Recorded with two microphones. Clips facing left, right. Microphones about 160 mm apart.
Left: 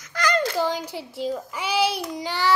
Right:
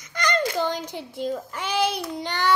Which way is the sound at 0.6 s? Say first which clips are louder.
Left 1 dB; 10° left (ahead or behind).